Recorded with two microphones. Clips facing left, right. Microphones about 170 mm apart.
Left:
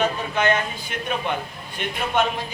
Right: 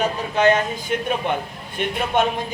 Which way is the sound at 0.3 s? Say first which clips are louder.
Right 5 dB; 40° right (ahead or behind).